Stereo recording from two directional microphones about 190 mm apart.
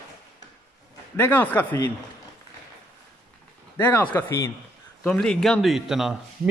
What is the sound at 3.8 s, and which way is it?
A man's voice, 10° left (ahead or behind).